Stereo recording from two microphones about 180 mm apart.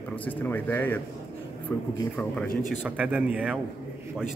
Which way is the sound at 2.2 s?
5° left (ahead or behind).